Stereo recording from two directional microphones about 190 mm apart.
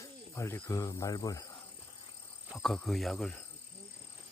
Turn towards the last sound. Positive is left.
turn(degrees=5)  # may be behind; listen again after turning